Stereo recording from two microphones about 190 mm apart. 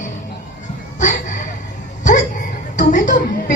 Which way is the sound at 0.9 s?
40° left (ahead or behind).